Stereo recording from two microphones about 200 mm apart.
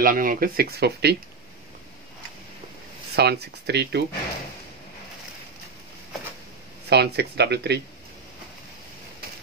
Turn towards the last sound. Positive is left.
turn(degrees=-55)  # may be behind; listen again after turning